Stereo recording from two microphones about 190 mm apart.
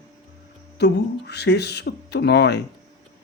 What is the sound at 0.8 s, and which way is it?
Speech, 60° left (ahead or behind).